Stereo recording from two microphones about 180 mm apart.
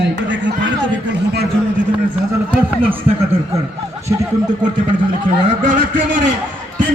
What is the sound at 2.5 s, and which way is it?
Speech, 10° right (ahead or behind).